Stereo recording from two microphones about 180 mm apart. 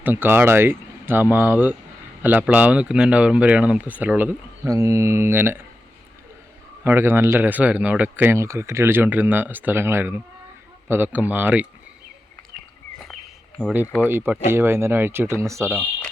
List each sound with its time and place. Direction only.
0.0 s speech: 10° right (ahead or behind)
6.8 s speech: 10° right (ahead or behind)
14.1 s speech: 10° right (ahead or behind)